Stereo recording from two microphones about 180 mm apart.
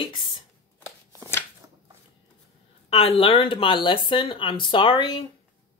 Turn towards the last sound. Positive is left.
turn(degrees=30)  # may be behind; listen again after turning